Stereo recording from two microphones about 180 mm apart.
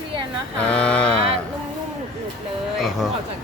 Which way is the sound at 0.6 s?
5° left (ahead or behind).